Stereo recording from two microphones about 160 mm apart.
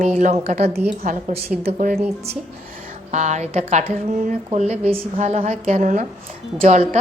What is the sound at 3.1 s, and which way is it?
A woman's voice, 45° right (ahead or behind).